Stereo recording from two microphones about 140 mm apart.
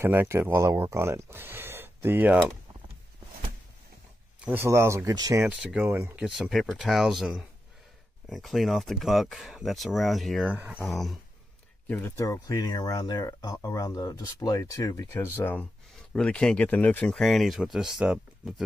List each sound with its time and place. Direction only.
0.0 s speech: 15° right (ahead or behind)
4.5 s speech: 20° right (ahead or behind)
5.4 s speech: 5° right (ahead or behind)
6.2 s speech: 5° right (ahead or behind)
10.5 s speech: 15° right (ahead or behind)
10.9 s speech: centre (ahead or behind)
11.9 s speech: 20° left (ahead or behind); by 18.5 s 5° right (ahead or behind)